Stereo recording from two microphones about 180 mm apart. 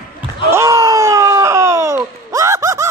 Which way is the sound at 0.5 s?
15° right (ahead or behind).